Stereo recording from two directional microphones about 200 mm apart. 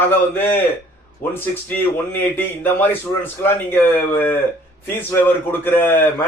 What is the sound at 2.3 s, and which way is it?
Speech, 10° left (ahead or behind).